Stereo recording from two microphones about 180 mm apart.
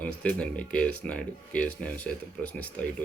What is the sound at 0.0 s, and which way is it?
Speech, 5° left (ahead or behind).